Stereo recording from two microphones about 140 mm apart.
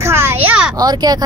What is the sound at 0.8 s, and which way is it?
Speech, 30° right (ahead or behind).